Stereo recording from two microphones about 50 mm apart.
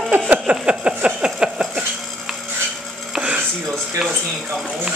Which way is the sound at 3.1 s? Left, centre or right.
Right.